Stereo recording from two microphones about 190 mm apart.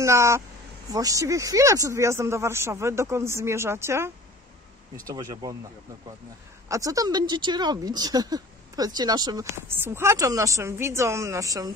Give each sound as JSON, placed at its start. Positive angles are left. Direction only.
{"t": 0.0, "sound": "speech", "side_deg": -15}
{"t": 6.7, "sound": "speech", "side_deg": -15}